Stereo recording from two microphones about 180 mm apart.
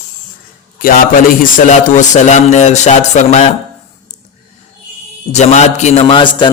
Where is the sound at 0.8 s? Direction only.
50° left (ahead or behind).